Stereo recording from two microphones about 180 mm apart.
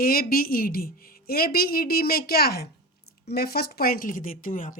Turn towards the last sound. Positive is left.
turn(degrees=50)  # may be behind; listen again after turning